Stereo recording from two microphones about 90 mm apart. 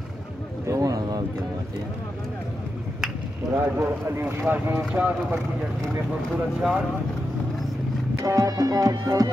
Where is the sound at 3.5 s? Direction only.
25° right (ahead or behind).